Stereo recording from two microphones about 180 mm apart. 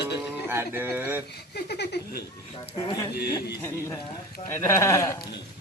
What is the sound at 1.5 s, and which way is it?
Speech, 65° left (ahead or behind).